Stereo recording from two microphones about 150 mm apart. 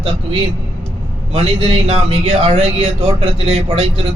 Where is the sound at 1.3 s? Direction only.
45° right (ahead or behind).